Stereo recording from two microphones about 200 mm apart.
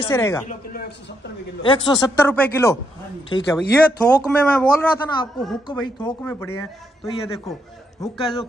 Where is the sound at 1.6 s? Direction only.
25° left (ahead or behind).